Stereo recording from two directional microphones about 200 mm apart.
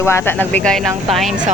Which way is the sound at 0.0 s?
15° left (ahead or behind).